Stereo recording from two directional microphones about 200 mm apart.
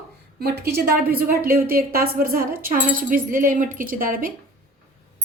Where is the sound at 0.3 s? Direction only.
50° right (ahead or behind).